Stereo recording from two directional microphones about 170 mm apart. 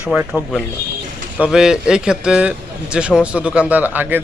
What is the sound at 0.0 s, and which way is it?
Speech, 5° right (ahead or behind).